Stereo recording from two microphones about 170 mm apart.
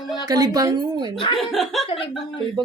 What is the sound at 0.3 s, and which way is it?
Speech, 20° right (ahead or behind).